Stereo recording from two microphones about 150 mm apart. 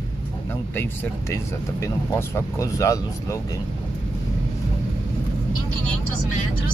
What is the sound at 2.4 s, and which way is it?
Speech, 20° left (ahead or behind).